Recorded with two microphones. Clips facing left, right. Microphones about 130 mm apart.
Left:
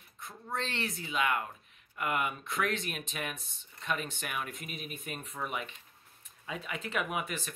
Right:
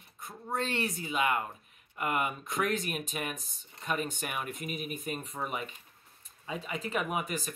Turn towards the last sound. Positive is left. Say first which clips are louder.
# right 2 dB
turn(degrees=0)  # may be behind; listen again after turning